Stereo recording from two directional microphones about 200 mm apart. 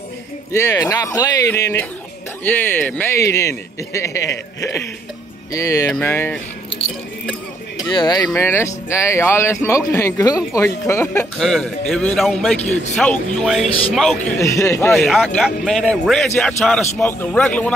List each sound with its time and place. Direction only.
0.5 s speech: 15° left (ahead or behind)
5.5 s speech: 15° left (ahead or behind)
7.9 s speech: 20° left (ahead or behind)
11.3 s a man's voice: centre (ahead or behind)
14.4 s speech: 15° left (ahead or behind)
14.9 s a man's voice: centre (ahead or behind)